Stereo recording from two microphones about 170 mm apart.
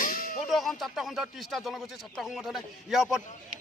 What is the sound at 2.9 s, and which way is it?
Speech, 5° right (ahead or behind).